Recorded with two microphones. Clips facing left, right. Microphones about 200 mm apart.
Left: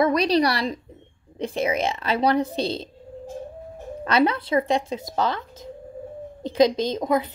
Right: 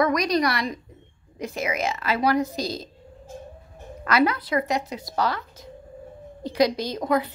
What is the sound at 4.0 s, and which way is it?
Speech, 25° left (ahead or behind).